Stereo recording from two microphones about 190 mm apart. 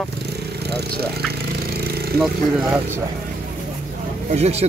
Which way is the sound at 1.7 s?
55° right (ahead or behind).